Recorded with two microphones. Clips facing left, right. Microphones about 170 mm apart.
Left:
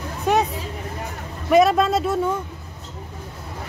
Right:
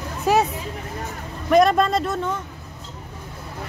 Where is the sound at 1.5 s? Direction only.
5° left (ahead or behind).